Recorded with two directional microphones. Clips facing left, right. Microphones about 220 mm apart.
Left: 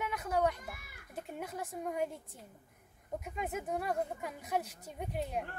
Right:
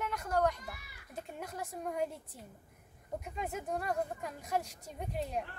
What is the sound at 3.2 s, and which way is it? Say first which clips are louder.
A woman's voice: left 2 dB; 5° left (ahead or behind).